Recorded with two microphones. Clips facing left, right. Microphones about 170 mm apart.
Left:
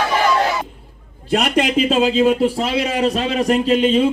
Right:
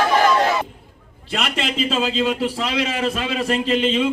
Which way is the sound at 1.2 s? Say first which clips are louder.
Left 7 dB; 45° left (ahead or behind).